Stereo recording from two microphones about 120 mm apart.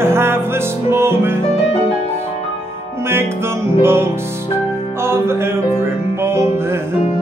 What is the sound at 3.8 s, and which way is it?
Music, 20° right (ahead or behind).